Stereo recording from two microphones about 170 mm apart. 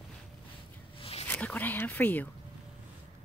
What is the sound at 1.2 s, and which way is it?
Whispering, 10° left (ahead or behind).